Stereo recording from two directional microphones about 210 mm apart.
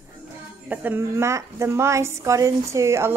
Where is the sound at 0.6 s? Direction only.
10° right (ahead or behind).